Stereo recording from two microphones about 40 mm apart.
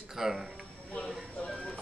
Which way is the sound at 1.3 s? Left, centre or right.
Left.